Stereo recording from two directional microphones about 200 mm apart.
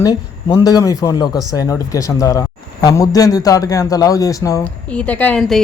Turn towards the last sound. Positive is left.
turn(degrees=0)  # may be behind; listen again after turning